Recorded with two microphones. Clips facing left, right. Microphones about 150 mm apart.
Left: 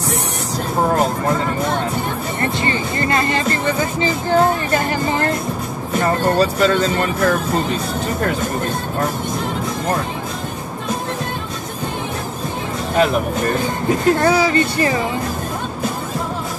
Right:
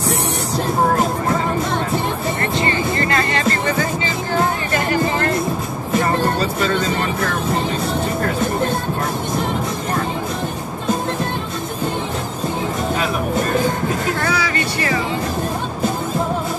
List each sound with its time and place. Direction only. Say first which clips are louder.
14.2 s speech: left 6 dB; 30° left (ahead or behind)